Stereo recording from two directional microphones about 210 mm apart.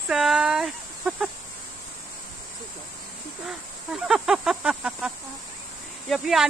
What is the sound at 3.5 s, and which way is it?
Speech, 5° right (ahead or behind).